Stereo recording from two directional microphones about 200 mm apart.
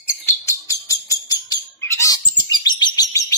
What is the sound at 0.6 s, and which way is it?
Bird, 15° left (ahead or behind).